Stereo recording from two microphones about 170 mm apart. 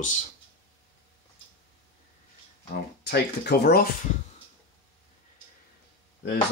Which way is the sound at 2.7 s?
70° left (ahead or behind).